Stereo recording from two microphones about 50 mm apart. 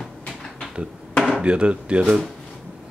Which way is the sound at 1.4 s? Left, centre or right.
Right.